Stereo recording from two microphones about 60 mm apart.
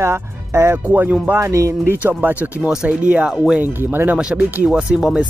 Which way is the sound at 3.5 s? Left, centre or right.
Right.